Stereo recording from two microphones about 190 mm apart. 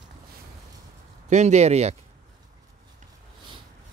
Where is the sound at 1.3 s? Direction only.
35° right (ahead or behind).